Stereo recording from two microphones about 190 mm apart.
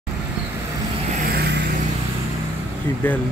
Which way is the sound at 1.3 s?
60° right (ahead or behind).